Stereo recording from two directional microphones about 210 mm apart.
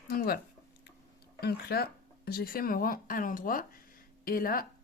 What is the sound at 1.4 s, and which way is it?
A woman's voice, 50° left (ahead or behind).